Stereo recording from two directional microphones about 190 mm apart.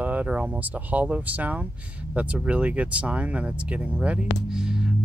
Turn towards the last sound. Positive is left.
turn(degrees=-5)  # may be behind; listen again after turning